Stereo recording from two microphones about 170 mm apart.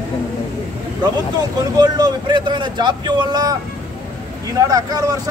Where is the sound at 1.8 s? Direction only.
25° right (ahead or behind).